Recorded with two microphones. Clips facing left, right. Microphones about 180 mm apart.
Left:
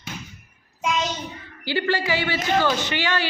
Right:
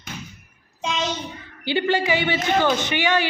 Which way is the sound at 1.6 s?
20° right (ahead or behind).